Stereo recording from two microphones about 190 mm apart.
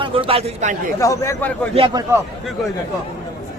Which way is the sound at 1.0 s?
15° left (ahead or behind).